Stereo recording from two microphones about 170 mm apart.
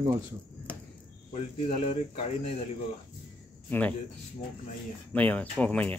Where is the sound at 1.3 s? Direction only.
40° left (ahead or behind).